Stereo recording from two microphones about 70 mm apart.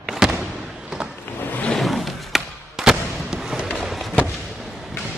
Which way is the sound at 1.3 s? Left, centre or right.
Left.